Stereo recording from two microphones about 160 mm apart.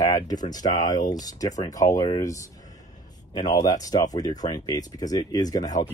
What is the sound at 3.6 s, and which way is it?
Speech, 25° left (ahead or behind).